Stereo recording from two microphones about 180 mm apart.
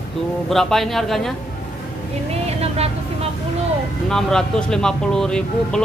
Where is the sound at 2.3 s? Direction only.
35° right (ahead or behind).